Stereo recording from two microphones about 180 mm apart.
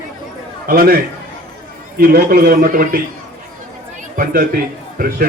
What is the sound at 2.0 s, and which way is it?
Speech, 55° right (ahead or behind).